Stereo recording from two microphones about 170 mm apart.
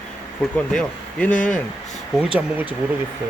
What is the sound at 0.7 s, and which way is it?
Speech, 5° left (ahead or behind).